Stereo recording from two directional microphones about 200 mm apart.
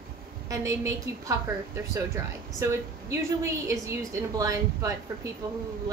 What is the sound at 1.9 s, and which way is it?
A woman's voice, 15° right (ahead or behind).